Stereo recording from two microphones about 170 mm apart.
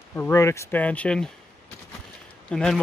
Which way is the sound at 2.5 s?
5° left (ahead or behind).